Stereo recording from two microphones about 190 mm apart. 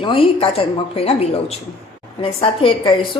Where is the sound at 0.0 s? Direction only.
30° left (ahead or behind).